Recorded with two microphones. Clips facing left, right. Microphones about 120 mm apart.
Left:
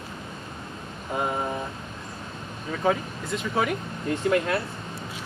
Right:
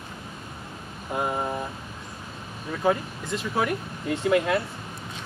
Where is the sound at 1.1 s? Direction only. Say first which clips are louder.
Even; centre (ahead or behind).